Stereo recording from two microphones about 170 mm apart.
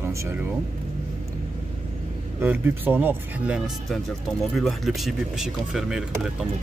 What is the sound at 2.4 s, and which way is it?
Speech, 10° right (ahead or behind).